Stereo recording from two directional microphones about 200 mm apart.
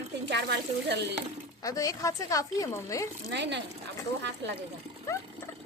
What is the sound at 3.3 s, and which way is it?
Speech, 60° right (ahead or behind).